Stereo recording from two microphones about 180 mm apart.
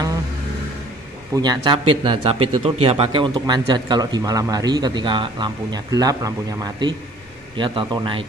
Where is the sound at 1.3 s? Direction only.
20° right (ahead or behind).